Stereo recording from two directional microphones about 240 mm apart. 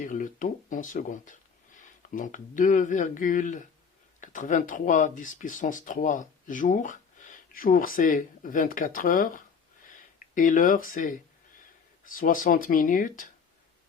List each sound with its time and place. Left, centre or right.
0.0 s speech: left
9.8 s a sound: left
12.0 s speech: left